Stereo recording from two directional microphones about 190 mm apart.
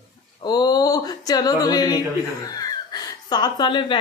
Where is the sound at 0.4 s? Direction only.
20° left (ahead or behind).